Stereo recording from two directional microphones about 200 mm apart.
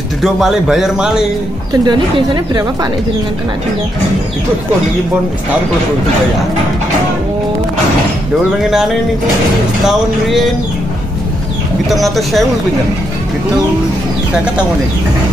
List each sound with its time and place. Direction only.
0.2 s a man's voice: centre (ahead or behind)
1.9 s a woman's voice: 20° right (ahead or behind)
8.6 s a man's voice: centre (ahead or behind)
11.9 s a man's voice: centre (ahead or behind)